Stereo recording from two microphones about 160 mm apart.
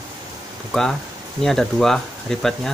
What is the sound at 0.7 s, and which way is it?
Speech, centre (ahead or behind).